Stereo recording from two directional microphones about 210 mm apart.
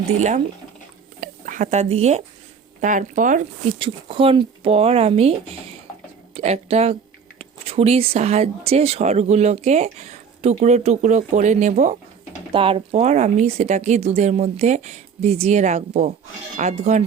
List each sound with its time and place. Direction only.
0.2 s speech: 35° right (ahead or behind)
3.8 s speech: 25° right (ahead or behind)
6.3 s speech: 30° right (ahead or behind)
12.5 s speech: 25° right (ahead or behind)